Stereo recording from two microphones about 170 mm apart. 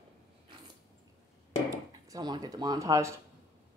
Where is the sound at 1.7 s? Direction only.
20° right (ahead or behind).